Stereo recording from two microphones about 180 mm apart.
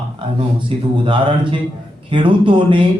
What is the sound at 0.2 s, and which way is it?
A man's voice, 25° right (ahead or behind).